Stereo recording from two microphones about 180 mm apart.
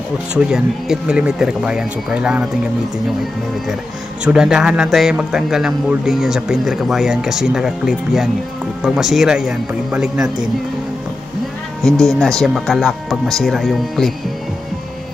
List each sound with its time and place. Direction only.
0.3 s a man's voice: 5° right (ahead or behind)
4.2 s a man's voice: 5° right (ahead or behind)
11.8 s a man's voice: centre (ahead or behind)